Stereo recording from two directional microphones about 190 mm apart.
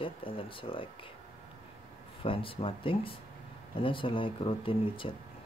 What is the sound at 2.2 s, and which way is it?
Speech, 30° left (ahead or behind).